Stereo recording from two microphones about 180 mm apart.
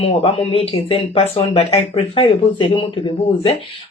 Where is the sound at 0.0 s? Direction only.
35° left (ahead or behind).